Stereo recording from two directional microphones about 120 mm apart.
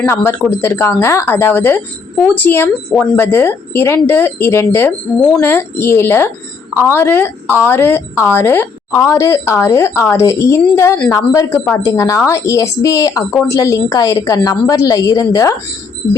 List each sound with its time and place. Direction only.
0.0 s a woman's voice: 20° left (ahead or behind)